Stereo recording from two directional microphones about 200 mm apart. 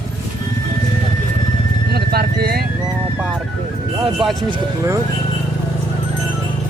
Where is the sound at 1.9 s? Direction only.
50° right (ahead or behind).